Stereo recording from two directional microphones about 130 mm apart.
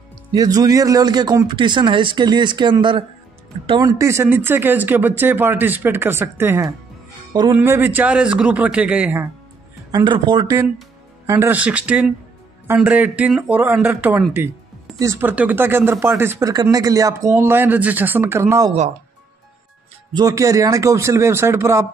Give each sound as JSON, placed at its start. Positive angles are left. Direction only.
{"t": 0.3, "sound": "a man's voice", "side_deg": -30}
{"t": 3.8, "sound": "speech", "side_deg": -25}
{"t": 9.8, "sound": "a man's voice", "side_deg": -35}
{"t": 10.4, "sound": "speech", "side_deg": -25}
{"t": 17.4, "sound": "speech", "side_deg": -15}
{"t": 20.2, "sound": "speech", "side_deg": -25}